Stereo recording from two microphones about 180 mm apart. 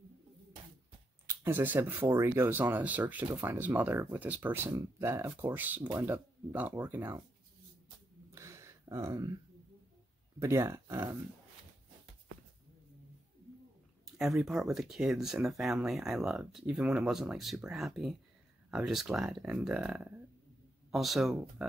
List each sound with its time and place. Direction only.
1.4 s speech: 10° right (ahead or behind)
8.3 s a sound: 15° right (ahead or behind)
10.4 s speech: 15° right (ahead or behind)
14.0 s speech: centre (ahead or behind)